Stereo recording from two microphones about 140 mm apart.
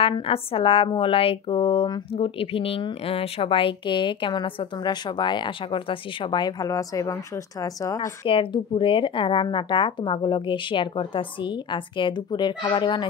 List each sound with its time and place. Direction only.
0.0 s a woman's voice: 40° left (ahead or behind); by 8.1 s 25° left (ahead or behind)
8.3 s a woman's voice: 40° left (ahead or behind)